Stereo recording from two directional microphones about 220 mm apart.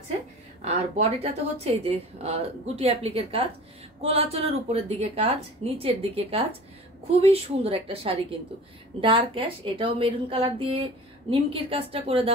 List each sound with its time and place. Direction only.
0.7 s a woman's voice: 30° right (ahead or behind)